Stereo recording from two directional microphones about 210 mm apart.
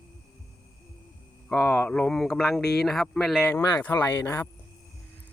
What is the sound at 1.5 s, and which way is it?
Speech, centre (ahead or behind).